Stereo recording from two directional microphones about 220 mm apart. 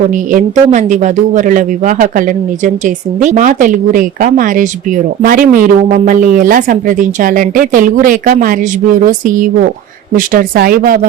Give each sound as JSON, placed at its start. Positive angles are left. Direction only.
{"t": 0.1, "sound": "a woman's voice", "side_deg": -35}